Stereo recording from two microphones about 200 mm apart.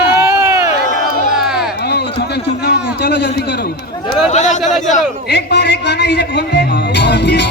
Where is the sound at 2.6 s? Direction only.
55° left (ahead or behind).